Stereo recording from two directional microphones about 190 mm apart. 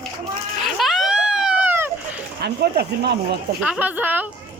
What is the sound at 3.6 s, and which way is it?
Speech, 5° right (ahead or behind).